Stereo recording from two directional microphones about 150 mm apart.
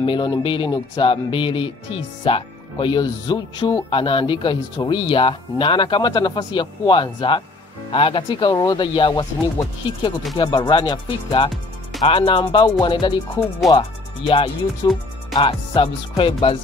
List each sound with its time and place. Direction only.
0.0 s speech: 35° left (ahead or behind)
10.3 s speech: 30° left (ahead or behind)